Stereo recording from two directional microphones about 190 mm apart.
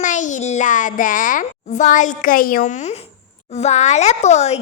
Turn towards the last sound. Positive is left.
turn(degrees=35)  # may be behind; listen again after turning